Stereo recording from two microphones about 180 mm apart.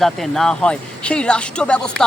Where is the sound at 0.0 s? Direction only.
Centre (ahead or behind).